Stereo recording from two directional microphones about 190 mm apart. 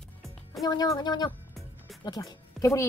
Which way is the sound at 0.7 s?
20° left (ahead or behind).